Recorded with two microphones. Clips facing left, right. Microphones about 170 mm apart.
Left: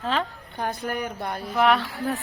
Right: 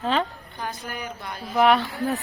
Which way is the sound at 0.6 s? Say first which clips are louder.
Left 5 dB; 55° left (ahead or behind).